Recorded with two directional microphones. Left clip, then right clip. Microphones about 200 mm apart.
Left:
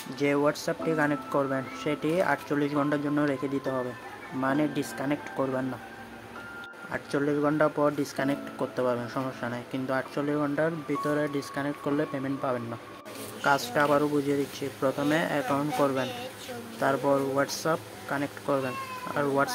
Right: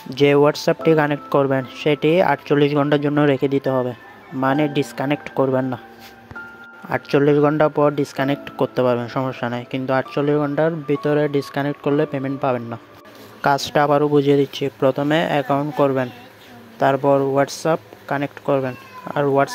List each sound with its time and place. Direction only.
0.1 s speech: 40° right (ahead or behind)
6.9 s speech: 40° right (ahead or behind)